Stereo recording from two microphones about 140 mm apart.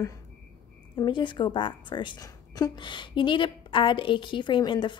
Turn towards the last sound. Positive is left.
turn(degrees=35)  # may be behind; listen again after turning